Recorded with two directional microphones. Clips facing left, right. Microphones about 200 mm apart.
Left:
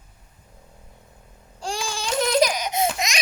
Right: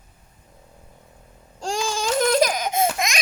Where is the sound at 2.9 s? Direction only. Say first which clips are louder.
Right 2 dB; 50° right (ahead or behind).